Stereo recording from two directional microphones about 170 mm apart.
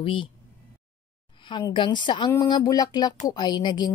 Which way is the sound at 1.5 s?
25° left (ahead or behind).